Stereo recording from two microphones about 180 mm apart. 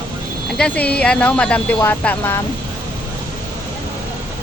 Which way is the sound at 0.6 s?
5° left (ahead or behind).